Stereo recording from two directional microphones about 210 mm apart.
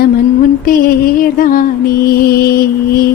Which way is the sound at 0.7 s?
40° left (ahead or behind).